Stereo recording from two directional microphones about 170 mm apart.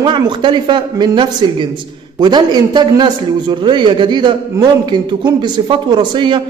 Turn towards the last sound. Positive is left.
turn(degrees=-25)  # may be behind; listen again after turning